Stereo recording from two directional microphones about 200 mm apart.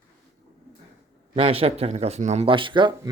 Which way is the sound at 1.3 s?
30° right (ahead or behind).